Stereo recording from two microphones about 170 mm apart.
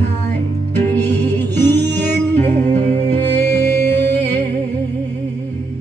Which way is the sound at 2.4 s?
40° right (ahead or behind).